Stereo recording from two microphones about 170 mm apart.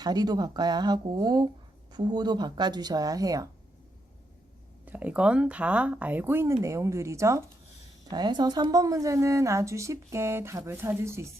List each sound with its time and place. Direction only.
0.0 s speech: 25° right (ahead or behind)
4.9 s a woman's voice: 10° right (ahead or behind)